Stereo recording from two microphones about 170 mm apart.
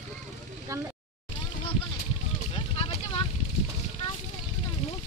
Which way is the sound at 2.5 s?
35° left (ahead or behind).